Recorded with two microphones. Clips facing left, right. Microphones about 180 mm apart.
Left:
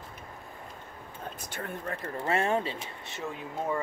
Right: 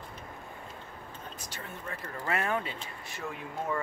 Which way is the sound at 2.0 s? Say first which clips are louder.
Left 4 dB; 30° left (ahead or behind).